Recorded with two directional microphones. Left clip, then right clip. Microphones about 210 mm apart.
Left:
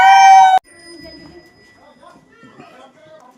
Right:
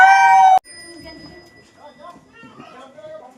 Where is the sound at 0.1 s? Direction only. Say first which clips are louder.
Left 5 dB; 15° left (ahead or behind).